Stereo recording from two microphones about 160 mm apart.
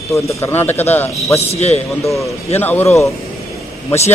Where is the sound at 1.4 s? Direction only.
40° left (ahead or behind).